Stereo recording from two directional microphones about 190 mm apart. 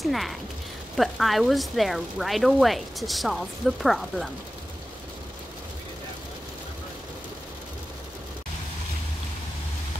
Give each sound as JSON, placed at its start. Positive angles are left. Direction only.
{"t": 0.0, "sound": "speech", "side_deg": 0}